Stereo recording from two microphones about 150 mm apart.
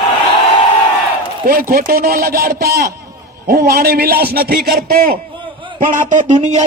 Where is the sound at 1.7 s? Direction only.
80° right.